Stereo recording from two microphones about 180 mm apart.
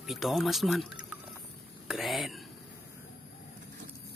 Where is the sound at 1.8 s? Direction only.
Centre (ahead or behind).